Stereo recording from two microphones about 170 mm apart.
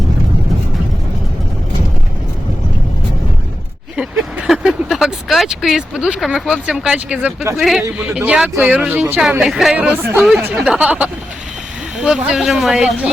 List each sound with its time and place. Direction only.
3.9 s speech: 5° right (ahead or behind)